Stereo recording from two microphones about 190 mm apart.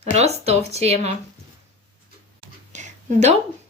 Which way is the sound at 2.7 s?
35° right (ahead or behind).